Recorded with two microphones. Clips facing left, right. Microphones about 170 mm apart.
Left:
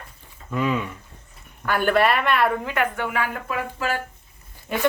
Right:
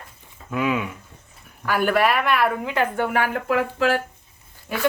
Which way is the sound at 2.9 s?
45° right (ahead or behind).